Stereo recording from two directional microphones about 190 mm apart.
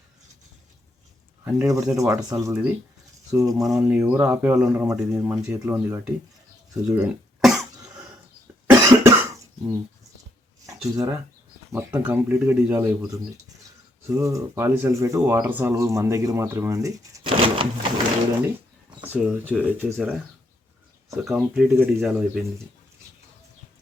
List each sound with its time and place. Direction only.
1.5 s speech: 15° right (ahead or behind)
3.8 s speech: 5° right (ahead or behind)
6.8 s cough: 5° right (ahead or behind)
8.6 s cough: 15° right (ahead or behind)
10.7 s speech: 20° right (ahead or behind)
19.0 s speech: 5° right (ahead or behind)
21.2 s speech: 5° right (ahead or behind)